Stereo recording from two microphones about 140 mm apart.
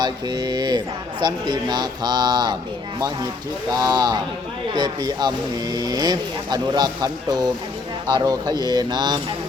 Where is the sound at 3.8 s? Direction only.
30° right (ahead or behind).